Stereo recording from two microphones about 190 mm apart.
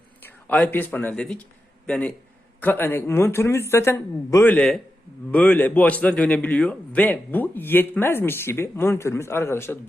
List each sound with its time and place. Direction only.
0.2 s a man's voice: 10° left (ahead or behind)